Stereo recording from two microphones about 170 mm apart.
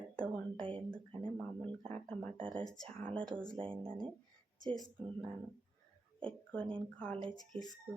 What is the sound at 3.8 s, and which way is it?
Speech, 30° right (ahead or behind).